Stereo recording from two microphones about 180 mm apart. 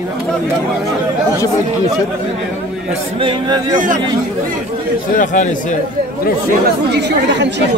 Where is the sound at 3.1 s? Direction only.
25° right (ahead or behind).